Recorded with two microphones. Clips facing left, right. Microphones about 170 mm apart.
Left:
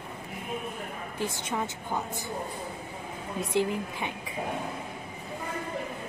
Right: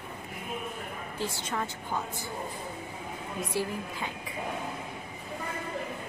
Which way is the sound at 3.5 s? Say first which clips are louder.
Left 6 dB; 20° left (ahead or behind).